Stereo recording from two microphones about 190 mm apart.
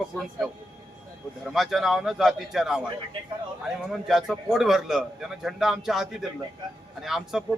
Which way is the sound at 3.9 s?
Centre (ahead or behind).